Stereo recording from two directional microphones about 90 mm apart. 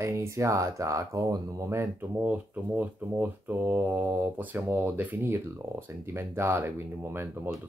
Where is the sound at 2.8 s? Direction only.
20° right (ahead or behind).